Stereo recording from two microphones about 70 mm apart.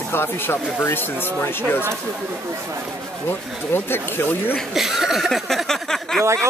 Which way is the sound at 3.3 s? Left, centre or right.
Left.